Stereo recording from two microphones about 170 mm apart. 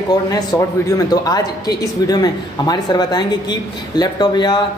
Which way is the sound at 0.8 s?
20° left (ahead or behind).